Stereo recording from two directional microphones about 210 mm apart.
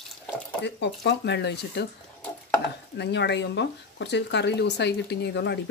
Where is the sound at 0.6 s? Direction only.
55° left (ahead or behind).